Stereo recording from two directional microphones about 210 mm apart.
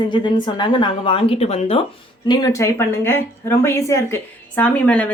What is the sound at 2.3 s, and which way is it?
Speech, 15° left (ahead or behind).